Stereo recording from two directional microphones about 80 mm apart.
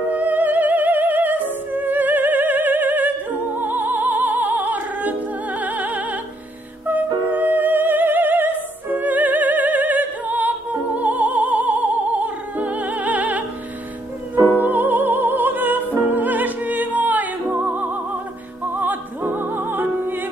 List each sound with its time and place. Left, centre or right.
0.1 s music: right
14.6 s music: right